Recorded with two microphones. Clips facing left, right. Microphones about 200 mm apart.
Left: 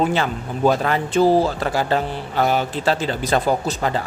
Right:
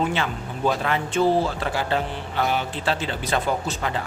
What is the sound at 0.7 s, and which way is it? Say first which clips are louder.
A man's voice: left 5 dB; 40° left (ahead or behind).